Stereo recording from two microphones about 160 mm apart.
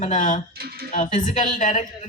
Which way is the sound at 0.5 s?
80° right.